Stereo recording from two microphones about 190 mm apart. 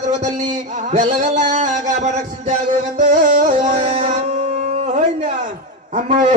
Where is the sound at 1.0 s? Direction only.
40° right (ahead or behind).